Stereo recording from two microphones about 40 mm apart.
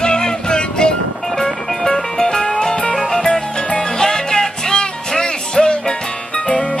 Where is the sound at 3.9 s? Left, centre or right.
Centre.